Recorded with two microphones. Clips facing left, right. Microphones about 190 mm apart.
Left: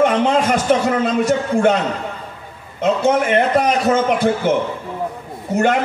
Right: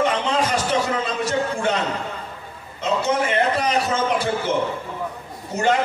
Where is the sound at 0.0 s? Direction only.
55° left (ahead or behind).